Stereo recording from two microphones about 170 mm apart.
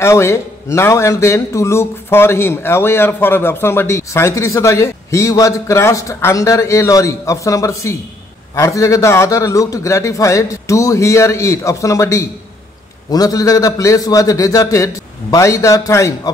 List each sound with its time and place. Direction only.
0.0 s a man's voice: 15° left (ahead or behind)